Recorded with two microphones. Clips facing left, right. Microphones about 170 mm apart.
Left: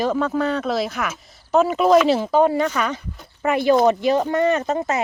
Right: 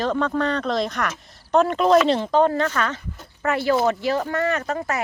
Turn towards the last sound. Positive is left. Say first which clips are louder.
# left 4 dB
turn(degrees=20)  # may be behind; listen again after turning